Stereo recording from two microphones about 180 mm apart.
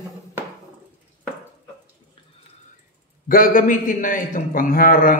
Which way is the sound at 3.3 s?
50° left (ahead or behind).